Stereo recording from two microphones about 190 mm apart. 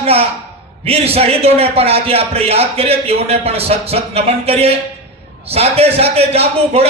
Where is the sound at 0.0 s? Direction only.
30° right (ahead or behind).